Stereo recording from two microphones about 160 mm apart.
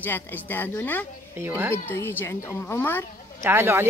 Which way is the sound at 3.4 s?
15° right (ahead or behind).